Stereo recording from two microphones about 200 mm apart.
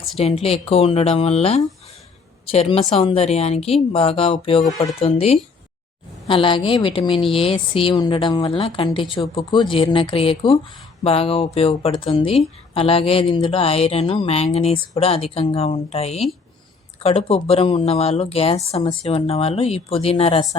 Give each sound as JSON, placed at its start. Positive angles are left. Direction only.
{"t": 0.4, "sound": "a woman's voice", "side_deg": 30}